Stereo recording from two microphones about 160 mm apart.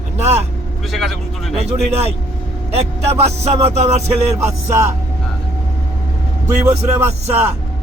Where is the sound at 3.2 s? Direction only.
40° right (ahead or behind).